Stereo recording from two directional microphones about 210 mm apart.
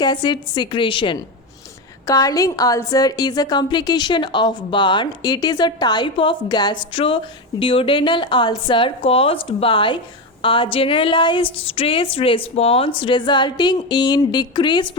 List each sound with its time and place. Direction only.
0.0 s a woman's voice: 20° left (ahead or behind)